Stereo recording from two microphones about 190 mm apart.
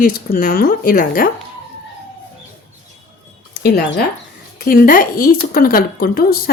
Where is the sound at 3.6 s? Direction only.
60° left (ahead or behind).